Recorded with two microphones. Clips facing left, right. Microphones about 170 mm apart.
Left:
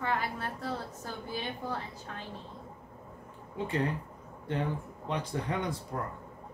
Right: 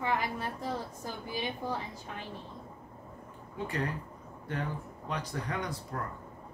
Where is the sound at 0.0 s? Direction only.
15° right (ahead or behind).